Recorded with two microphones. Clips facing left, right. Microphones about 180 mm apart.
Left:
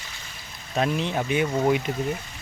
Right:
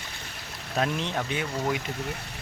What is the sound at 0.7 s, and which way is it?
Speech, centre (ahead or behind).